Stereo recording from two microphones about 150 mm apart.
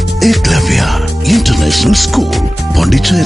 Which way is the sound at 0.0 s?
Centre (ahead or behind).